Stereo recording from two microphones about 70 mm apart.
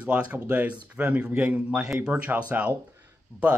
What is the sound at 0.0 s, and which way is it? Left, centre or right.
Speech, centre.